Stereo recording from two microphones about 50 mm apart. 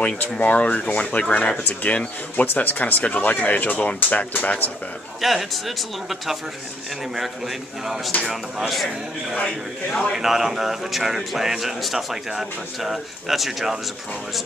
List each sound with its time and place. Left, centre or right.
0.2 s speech: left
1.6 s speech: left
5.2 s speech: centre
10.1 s speech: centre